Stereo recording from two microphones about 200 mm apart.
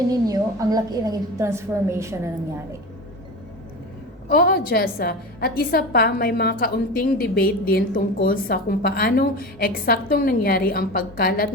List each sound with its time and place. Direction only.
0.1 s a woman's voice: 20° right (ahead or behind)
4.3 s a woman's voice: 50° left (ahead or behind)